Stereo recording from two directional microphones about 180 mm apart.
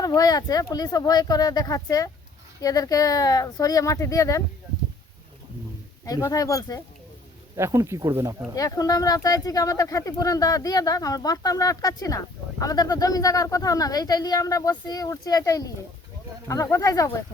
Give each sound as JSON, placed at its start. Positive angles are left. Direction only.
{"t": 0.0, "sound": "speech", "side_deg": 20}
{"t": 6.1, "sound": "speech", "side_deg": 20}
{"t": 7.5, "sound": "speech", "side_deg": -15}
{"t": 8.5, "sound": "speech", "side_deg": 20}